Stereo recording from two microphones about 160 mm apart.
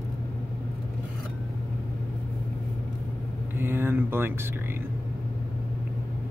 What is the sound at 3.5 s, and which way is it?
Mantra, 15° right (ahead or behind).